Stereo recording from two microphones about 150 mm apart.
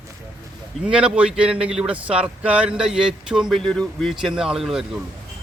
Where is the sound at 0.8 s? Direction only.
5° right (ahead or behind).